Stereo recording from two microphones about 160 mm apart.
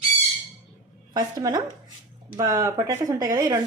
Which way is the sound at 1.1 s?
25° right (ahead or behind).